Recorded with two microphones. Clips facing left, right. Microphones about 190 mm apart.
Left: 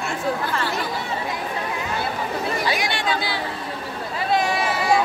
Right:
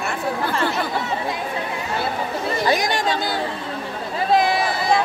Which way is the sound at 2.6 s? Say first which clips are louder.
Right 4 dB; 40° right (ahead or behind).